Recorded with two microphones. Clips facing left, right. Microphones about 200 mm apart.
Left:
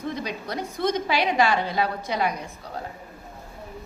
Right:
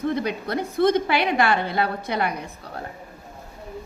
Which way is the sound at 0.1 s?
60° right (ahead or behind).